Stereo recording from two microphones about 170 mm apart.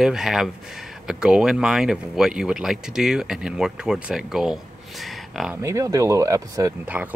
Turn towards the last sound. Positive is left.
turn(degrees=-10)  # may be behind; listen again after turning